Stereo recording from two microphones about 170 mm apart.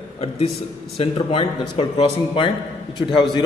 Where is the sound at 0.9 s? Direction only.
35° left (ahead or behind).